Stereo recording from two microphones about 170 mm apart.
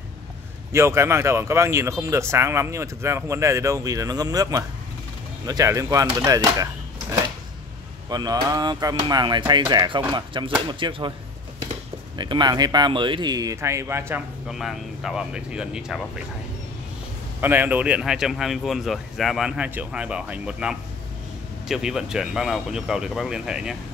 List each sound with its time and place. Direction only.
0.7 s speech: 15° right (ahead or behind)
12.2 s speech: 25° right (ahead or behind)
14.5 s speech: centre (ahead or behind)
17.4 s speech: 10° right (ahead or behind)